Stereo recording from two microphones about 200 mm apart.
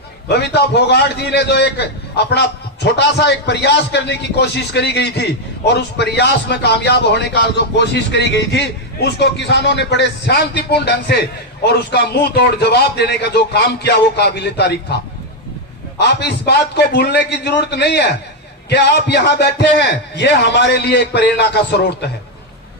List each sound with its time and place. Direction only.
0.5 s a man's voice: 55° left (ahead or behind)
16.0 s a man's voice: 55° left (ahead or behind)